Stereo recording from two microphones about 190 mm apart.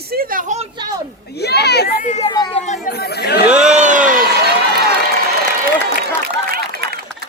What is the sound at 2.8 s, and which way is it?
Chatter, 60° left (ahead or behind).